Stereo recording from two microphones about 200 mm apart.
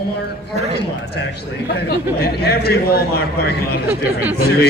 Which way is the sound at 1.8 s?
50° left (ahead or behind).